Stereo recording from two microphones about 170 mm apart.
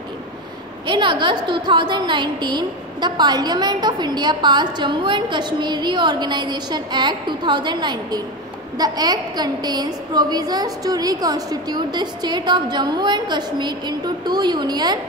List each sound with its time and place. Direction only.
0.8 s a woman's voice: 30° right (ahead or behind)